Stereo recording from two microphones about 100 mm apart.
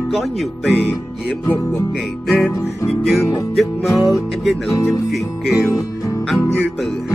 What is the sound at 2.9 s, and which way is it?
Music, 5° left (ahead or behind).